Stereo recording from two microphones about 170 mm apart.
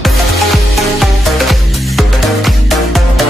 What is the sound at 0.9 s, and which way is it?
Music, centre (ahead or behind).